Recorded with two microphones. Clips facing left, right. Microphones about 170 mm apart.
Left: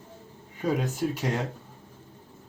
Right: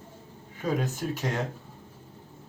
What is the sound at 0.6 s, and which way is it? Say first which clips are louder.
Speech: left 2 dB; 10° left (ahead or behind).